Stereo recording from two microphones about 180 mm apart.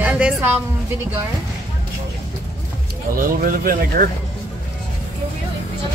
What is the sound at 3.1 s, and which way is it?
Speech, 50° right (ahead or behind).